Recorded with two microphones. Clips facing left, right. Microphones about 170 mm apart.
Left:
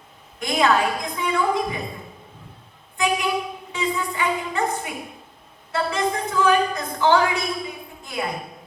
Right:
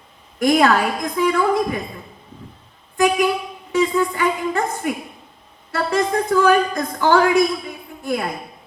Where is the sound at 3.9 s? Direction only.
50° right (ahead or behind).